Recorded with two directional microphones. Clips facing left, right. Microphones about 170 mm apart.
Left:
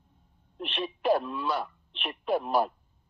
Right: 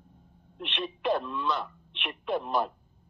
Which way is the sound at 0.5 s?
35° left (ahead or behind).